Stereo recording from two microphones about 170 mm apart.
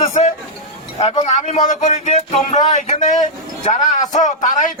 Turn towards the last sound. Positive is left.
turn(degrees=50)  # may be behind; listen again after turning